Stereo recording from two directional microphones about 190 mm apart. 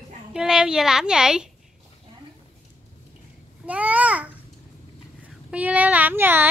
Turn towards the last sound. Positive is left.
turn(degrees=-10)  # may be behind; listen again after turning